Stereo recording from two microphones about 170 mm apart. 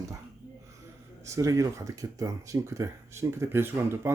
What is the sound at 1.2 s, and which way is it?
Speech, 20° right (ahead or behind).